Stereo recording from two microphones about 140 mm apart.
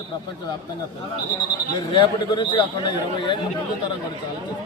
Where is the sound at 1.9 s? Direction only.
35° left (ahead or behind).